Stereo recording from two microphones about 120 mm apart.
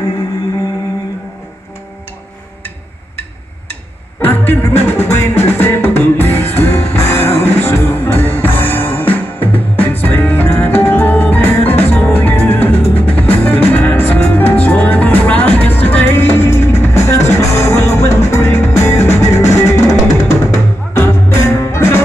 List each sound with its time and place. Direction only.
4.2 s music: 15° left (ahead or behind)